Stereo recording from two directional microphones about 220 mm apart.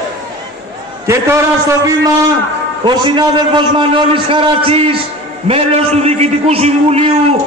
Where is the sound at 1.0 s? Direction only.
10° right (ahead or behind).